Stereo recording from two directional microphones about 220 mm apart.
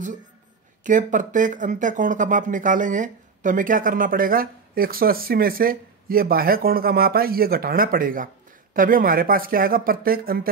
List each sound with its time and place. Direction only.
0.8 s speech: 35° right (ahead or behind)